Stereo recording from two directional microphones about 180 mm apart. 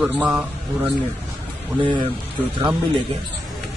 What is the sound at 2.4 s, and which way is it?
Speech, 25° right (ahead or behind).